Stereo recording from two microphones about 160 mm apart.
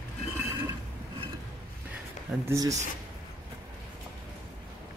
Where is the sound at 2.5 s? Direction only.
20° right (ahead or behind).